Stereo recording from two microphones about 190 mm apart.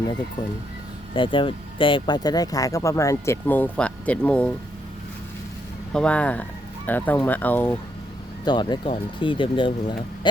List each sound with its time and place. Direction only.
1.1 s speech: 25° left (ahead or behind); by 4.5 s 5° left (ahead or behind)
5.9 s speech: 5° left (ahead or behind)
8.4 s speech: 25° left (ahead or behind)